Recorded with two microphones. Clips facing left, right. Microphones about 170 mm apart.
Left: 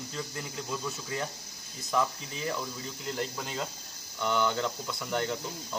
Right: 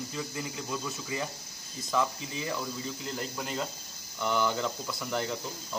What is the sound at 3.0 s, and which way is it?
Speech, centre (ahead or behind).